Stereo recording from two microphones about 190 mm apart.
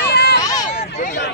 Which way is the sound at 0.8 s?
40° left (ahead or behind).